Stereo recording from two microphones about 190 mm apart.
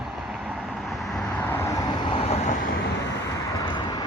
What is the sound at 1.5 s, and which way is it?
Vehicle, 15° left (ahead or behind).